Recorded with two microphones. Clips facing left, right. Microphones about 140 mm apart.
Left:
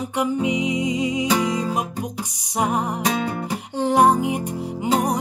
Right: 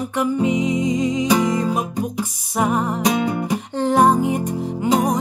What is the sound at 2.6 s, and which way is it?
Music, 15° left (ahead or behind).